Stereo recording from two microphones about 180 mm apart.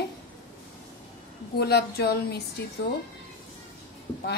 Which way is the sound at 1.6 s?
65° left (ahead or behind).